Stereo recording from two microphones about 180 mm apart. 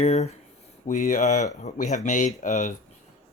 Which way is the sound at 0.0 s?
35° left (ahead or behind).